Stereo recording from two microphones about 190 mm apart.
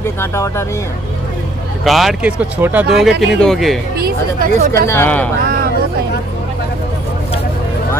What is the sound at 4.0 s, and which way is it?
Speech, 50° right (ahead or behind).